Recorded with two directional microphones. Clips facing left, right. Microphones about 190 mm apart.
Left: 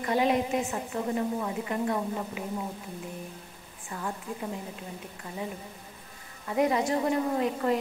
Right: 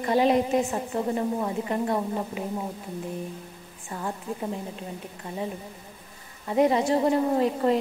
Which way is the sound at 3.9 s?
30° right (ahead or behind).